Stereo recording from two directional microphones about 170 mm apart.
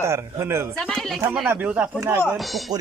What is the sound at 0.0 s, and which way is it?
Speech, 15° right (ahead or behind).